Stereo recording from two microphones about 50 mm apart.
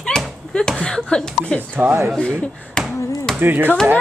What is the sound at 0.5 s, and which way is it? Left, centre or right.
Speech, centre.